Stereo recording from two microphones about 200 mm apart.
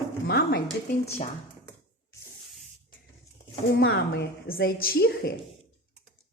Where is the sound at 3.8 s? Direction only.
60° left (ahead or behind).